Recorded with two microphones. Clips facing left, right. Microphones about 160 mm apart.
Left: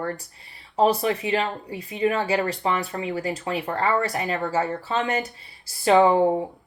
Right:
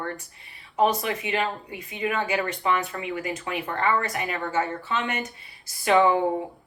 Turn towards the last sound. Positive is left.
turn(degrees=30)  # may be behind; listen again after turning